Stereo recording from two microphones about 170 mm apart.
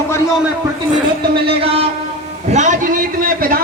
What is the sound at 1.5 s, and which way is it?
Speech, 35° right (ahead or behind).